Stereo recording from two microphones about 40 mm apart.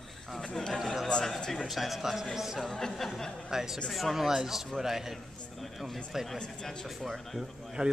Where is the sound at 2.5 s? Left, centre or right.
Centre.